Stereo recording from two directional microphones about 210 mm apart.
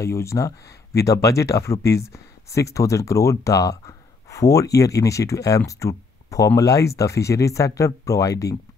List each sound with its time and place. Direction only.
0.0 s speech: 15° left (ahead or behind)